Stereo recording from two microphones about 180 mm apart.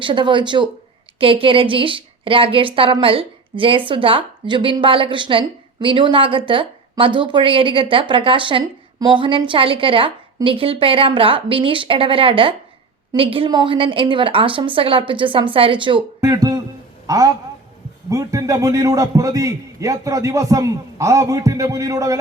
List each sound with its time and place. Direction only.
0.0 s a woman's voice: 25° right (ahead or behind)